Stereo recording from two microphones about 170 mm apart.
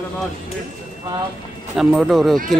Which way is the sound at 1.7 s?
5° right (ahead or behind).